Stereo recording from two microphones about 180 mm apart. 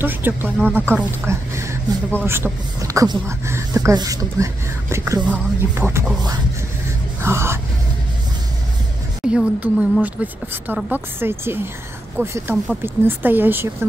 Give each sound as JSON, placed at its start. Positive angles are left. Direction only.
{"t": 0.0, "sound": "speech", "side_deg": -10}
{"t": 7.2, "sound": "speech", "side_deg": -15}
{"t": 9.3, "sound": "speech", "side_deg": -5}